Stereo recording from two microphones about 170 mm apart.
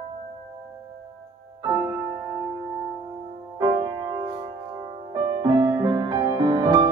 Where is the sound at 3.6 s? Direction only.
25° right (ahead or behind).